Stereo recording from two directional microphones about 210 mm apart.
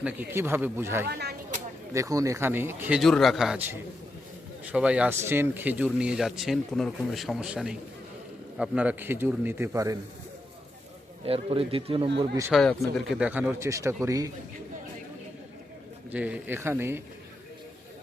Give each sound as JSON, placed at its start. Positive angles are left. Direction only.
{"t": 0.0, "sound": "speech", "side_deg": -10}
{"t": 1.0, "sound": "speech", "side_deg": -50}
{"t": 1.9, "sound": "speech", "side_deg": -15}
{"t": 11.3, "sound": "speech", "side_deg": -25}
{"t": 12.5, "sound": "speech", "side_deg": 5}
{"t": 16.1, "sound": "speech", "side_deg": -5}